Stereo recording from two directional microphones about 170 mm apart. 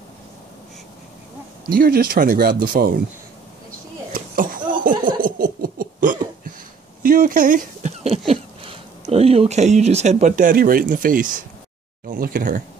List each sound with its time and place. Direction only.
1.7 s speech: 60° right (ahead or behind)
4.1 s laughter: 55° right (ahead or behind)
7.0 s a sound: 55° right (ahead or behind)
8.3 s speech: 35° right (ahead or behind); by 12.6 s 50° right (ahead or behind)